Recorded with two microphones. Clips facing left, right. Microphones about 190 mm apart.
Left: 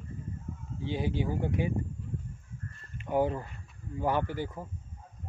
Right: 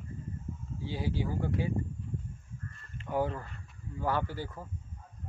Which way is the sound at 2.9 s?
20° left (ahead or behind).